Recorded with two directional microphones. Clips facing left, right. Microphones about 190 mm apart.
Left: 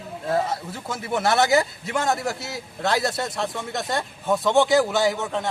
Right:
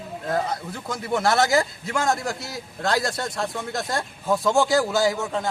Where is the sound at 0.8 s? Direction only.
5° left (ahead or behind).